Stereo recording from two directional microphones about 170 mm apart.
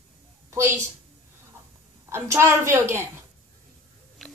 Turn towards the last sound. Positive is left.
turn(degrees=-15)  # may be behind; listen again after turning